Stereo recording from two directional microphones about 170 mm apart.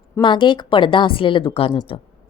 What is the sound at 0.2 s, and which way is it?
A woman's voice, 30° left (ahead or behind).